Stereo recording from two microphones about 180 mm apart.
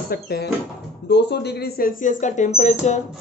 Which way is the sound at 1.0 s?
70° left (ahead or behind).